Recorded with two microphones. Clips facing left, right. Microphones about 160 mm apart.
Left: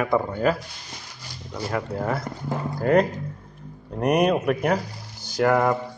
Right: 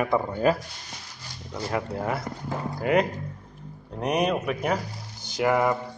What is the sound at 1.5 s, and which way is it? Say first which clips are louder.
Speech: left 1 dB; 20° right (ahead or behind).